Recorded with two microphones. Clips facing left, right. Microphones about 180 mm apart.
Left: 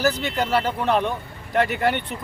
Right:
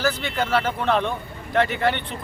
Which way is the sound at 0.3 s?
15° left (ahead or behind).